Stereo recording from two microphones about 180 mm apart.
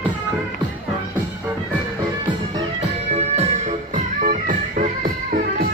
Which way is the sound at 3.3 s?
35° right (ahead or behind).